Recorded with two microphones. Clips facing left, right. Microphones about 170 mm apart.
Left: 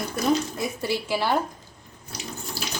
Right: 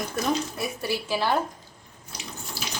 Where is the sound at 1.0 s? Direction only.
15° left (ahead or behind).